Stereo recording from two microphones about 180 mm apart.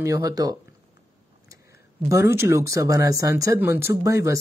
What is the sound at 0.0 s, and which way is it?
Speech, 20° right (ahead or behind).